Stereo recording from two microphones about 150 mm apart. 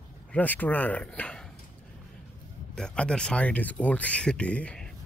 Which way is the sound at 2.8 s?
5° left (ahead or behind).